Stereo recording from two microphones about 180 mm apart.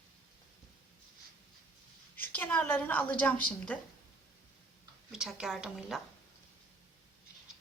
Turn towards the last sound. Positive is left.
turn(degrees=-5)  # may be behind; listen again after turning